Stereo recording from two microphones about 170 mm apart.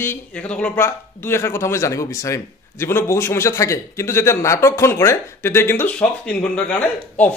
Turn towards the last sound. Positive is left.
turn(degrees=5)  # may be behind; listen again after turning